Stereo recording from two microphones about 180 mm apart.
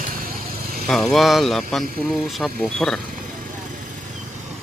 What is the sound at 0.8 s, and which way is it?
Speech, centre (ahead or behind).